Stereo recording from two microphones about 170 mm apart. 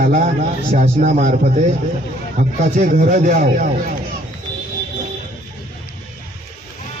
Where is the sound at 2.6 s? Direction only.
50° right (ahead or behind).